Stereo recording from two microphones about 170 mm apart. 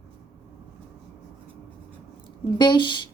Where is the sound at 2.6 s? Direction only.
25° left (ahead or behind).